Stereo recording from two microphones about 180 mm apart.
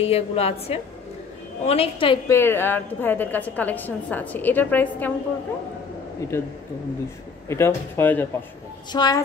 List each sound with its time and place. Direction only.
0.0 s a woman's voice: 35° left (ahead or behind)
2.2 s a woman's voice: 15° left (ahead or behind)
7.4 s a woman's voice: 15° left (ahead or behind)
8.9 s a woman's voice: 25° left (ahead or behind)